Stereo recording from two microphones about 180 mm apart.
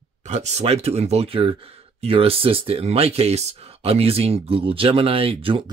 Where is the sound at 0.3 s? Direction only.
40° right (ahead or behind).